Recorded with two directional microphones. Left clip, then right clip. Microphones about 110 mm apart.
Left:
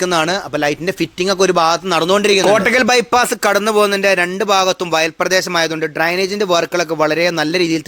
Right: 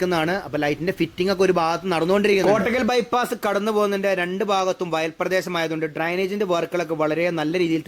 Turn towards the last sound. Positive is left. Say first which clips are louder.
# left 6 dB
turn(degrees=40)  # may be behind; listen again after turning